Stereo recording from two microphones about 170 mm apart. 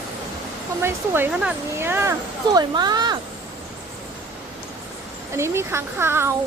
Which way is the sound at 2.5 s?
25° right (ahead or behind).